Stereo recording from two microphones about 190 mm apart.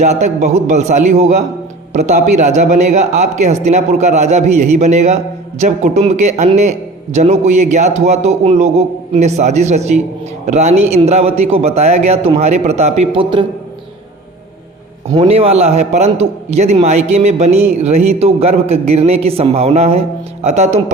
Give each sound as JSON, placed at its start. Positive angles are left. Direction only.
{"t": 0.0, "sound": "speech", "side_deg": -35}
{"t": 15.1, "sound": "speech", "side_deg": -30}